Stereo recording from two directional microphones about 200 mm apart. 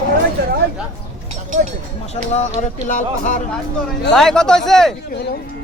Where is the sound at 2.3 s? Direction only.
35° left (ahead or behind).